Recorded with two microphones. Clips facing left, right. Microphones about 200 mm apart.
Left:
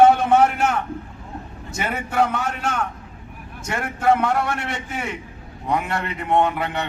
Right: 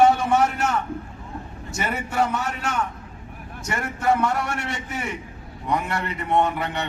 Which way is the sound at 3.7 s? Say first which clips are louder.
Left 3 dB; 55° left (ahead or behind).